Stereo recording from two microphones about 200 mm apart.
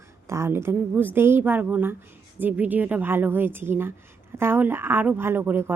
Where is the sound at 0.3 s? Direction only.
15° right (ahead or behind).